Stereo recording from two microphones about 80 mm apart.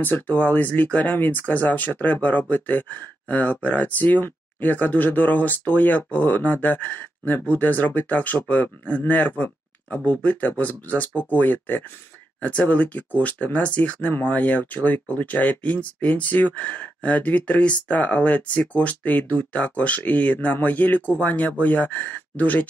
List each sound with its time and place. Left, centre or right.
0.0 s speech: left